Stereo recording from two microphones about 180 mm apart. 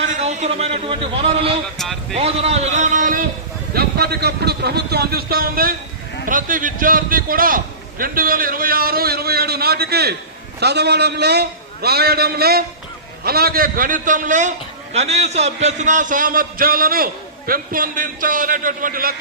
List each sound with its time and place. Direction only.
0.1 s a man's voice: 40° right (ahead or behind)
1.8 s speech: centre (ahead or behind)
2.1 s a man's voice: 35° right (ahead or behind)
3.8 s a man's voice: 60° right (ahead or behind)